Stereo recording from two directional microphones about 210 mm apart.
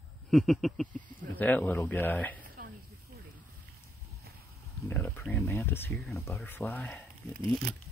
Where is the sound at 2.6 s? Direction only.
45° right (ahead or behind).